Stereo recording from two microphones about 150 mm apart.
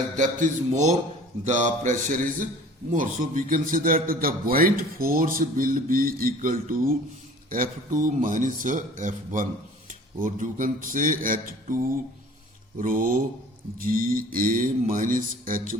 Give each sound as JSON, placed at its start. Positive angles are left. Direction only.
{"t": 0.2, "sound": "a man's voice", "side_deg": -60}